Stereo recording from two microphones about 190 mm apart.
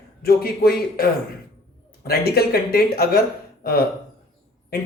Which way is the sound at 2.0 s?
55° left (ahead or behind).